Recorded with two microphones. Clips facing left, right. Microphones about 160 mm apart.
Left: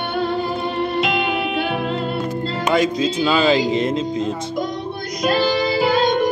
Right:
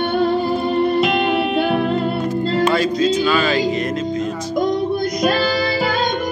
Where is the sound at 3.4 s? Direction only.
25° left (ahead or behind).